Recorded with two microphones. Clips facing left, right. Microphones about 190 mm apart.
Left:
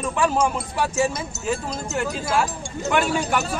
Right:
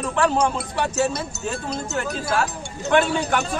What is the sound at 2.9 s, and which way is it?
Speech, 5° left (ahead or behind).